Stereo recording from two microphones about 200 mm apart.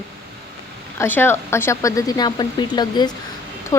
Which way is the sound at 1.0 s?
10° left (ahead or behind).